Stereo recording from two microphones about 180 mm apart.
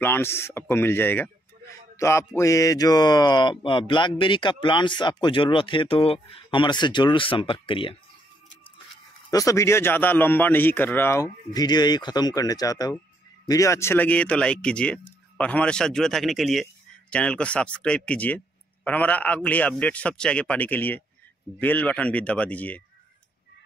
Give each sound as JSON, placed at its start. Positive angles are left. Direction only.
{"t": 0.0, "sound": "a man's voice", "side_deg": 10}
{"t": 9.3, "sound": "a man's voice", "side_deg": 20}